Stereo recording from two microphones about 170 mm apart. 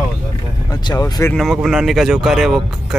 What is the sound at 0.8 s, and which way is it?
Speech, 20° left (ahead or behind).